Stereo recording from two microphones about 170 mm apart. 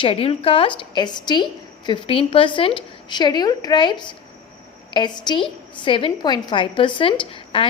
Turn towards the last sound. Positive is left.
turn(degrees=30)  # may be behind; listen again after turning